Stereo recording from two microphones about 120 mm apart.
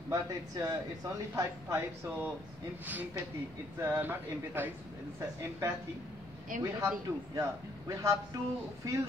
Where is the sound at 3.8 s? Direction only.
15° right (ahead or behind).